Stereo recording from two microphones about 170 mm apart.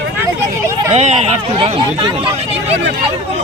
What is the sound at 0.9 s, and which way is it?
Speech, 40° right (ahead or behind).